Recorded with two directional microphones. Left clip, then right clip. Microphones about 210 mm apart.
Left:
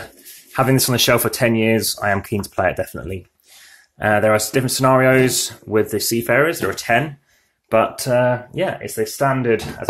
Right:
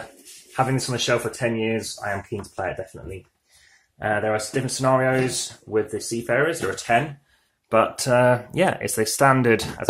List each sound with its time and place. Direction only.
0.5 s speech: 40° left (ahead or behind)
4.0 s speech: 30° left (ahead or behind)
7.7 s speech: 5° left (ahead or behind)
8.5 s speech: 25° right (ahead or behind)